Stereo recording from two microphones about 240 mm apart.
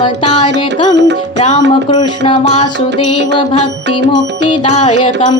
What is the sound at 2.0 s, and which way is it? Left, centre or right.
Music, centre.